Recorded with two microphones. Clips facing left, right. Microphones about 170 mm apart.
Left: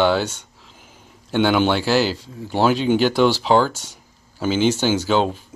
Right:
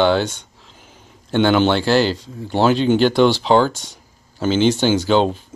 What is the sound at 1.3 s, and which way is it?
Speech, 10° left (ahead or behind).